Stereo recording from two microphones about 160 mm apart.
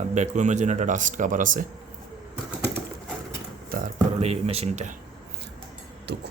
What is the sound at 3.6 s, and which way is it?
Music, 65° right (ahead or behind).